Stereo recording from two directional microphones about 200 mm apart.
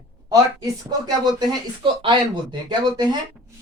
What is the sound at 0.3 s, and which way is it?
Speech, 20° right (ahead or behind).